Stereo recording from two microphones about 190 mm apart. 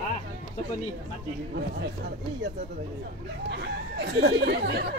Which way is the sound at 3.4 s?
60° right (ahead or behind).